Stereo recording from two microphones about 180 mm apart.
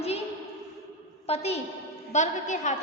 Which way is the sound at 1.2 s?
35° left (ahead or behind).